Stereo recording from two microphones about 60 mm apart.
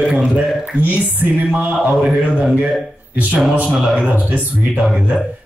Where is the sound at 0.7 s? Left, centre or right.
Right.